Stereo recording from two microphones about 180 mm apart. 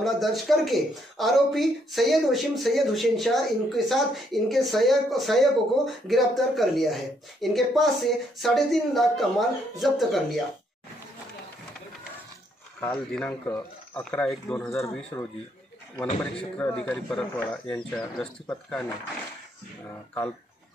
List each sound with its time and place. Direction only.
0.0 s speech: centre (ahead or behind)
13.1 s speech: 10° left (ahead or behind)
15.1 s a man's voice: 20° left (ahead or behind)
16.5 s speech: 5° left (ahead or behind)